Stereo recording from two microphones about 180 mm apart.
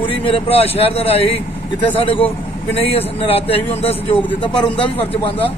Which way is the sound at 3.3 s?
35° left (ahead or behind).